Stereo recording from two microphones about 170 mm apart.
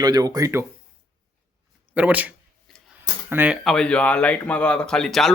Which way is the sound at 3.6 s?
5° left (ahead or behind).